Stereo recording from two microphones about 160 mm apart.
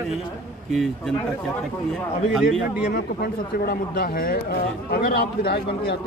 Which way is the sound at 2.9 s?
70° left (ahead or behind).